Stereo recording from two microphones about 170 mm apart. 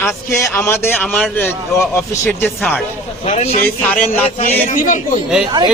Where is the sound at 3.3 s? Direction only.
40° left (ahead or behind).